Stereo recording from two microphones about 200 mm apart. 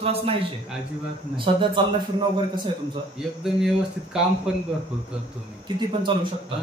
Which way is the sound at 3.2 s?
5° right (ahead or behind).